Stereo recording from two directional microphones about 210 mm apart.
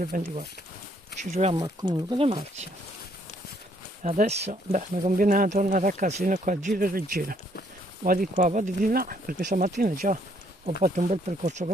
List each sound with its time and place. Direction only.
0.0 s speech: 40° right (ahead or behind)
1.6 s speech: 20° right (ahead or behind)
4.0 s speech: 35° right (ahead or behind)